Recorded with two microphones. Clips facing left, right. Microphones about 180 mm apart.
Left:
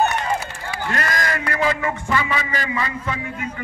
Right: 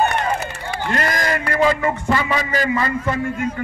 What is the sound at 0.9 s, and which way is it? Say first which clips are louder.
A man's voice: right 3 dB; 30° right (ahead or behind).